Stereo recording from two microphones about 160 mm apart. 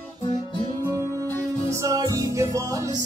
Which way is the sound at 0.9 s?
20° right (ahead or behind).